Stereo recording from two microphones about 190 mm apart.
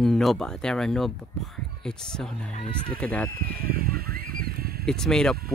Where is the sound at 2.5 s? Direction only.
30° left (ahead or behind).